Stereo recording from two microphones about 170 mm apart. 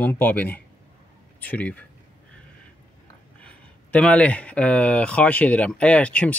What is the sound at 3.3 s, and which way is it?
Speech, 5° left (ahead or behind).